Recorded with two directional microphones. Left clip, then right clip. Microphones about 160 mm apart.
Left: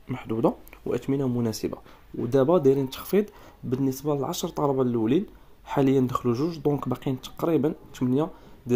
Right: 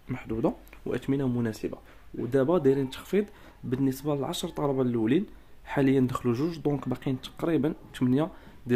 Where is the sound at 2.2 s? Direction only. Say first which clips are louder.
Left 4 dB; 15° left (ahead or behind).